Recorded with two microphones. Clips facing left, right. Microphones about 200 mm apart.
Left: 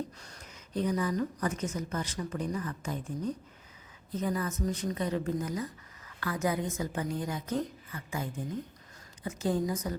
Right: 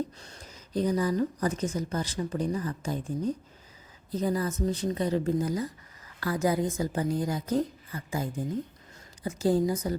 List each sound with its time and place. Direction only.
0.2 s a woman's voice: 30° right (ahead or behind)
4.1 s a woman's voice: 35° right (ahead or behind)